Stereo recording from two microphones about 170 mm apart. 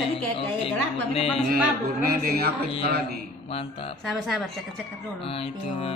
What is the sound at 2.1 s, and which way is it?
Speech, 65° right (ahead or behind).